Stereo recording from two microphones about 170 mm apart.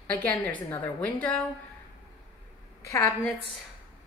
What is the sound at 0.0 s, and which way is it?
A woman's voice, 10° left (ahead or behind).